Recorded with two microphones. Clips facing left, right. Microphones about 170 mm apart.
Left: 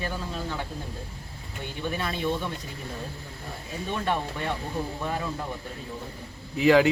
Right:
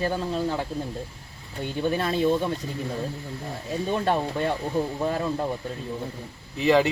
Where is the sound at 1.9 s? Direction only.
30° right (ahead or behind).